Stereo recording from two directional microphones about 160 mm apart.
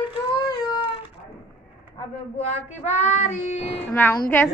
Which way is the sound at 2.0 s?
40° left (ahead or behind).